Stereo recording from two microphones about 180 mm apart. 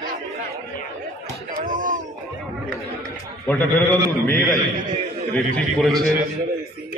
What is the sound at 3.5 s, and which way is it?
A man's voice, 10° left (ahead or behind).